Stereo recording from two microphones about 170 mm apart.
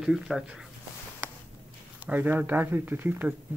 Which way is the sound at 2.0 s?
10° right (ahead or behind).